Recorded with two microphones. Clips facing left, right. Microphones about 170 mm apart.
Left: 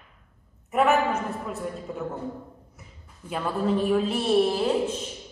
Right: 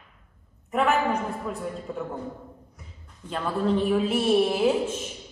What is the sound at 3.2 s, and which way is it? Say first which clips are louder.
A woman's voice: even; 5° left (ahead or behind).